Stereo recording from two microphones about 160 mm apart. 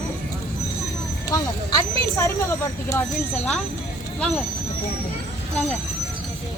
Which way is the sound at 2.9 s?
10° left (ahead or behind).